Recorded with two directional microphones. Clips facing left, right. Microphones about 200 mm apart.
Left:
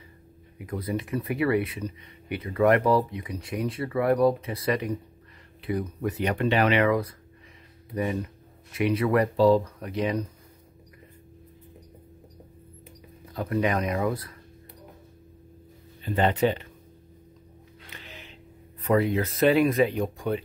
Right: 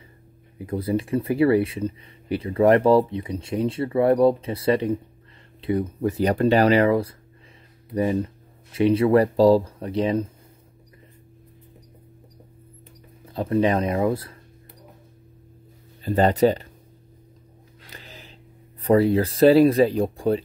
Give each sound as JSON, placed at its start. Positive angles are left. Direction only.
{"t": 0.6, "sound": "speech", "side_deg": -30}
{"t": 13.3, "sound": "speech", "side_deg": -30}
{"t": 16.0, "sound": "speech", "side_deg": -40}
{"t": 17.8, "sound": "music", "side_deg": -35}
{"t": 18.8, "sound": "speech", "side_deg": -35}